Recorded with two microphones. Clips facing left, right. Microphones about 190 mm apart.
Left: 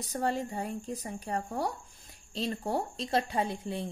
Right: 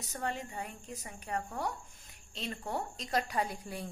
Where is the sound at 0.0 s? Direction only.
35° left (ahead or behind).